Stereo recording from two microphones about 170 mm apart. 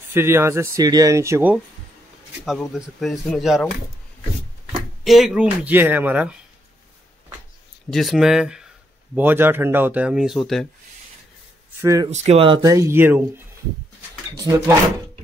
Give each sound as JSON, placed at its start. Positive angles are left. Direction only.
{"t": 0.1, "sound": "speech", "side_deg": -15}
{"t": 2.4, "sound": "a man's voice", "side_deg": 0}
{"t": 5.0, "sound": "speech", "side_deg": 0}
{"t": 7.9, "sound": "a man's voice", "side_deg": 0}
{"t": 11.8, "sound": "speech", "side_deg": -20}
{"t": 12.1, "sound": "speech", "side_deg": -40}
{"t": 12.6, "sound": "speech", "side_deg": -15}
{"t": 14.3, "sound": "speech", "side_deg": -20}